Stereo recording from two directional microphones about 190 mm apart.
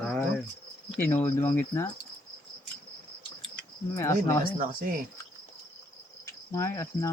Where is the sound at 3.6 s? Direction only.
15° left (ahead or behind).